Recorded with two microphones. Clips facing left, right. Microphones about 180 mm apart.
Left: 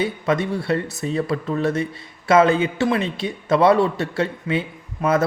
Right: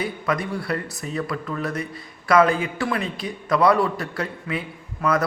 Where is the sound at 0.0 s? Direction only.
25° left (ahead or behind).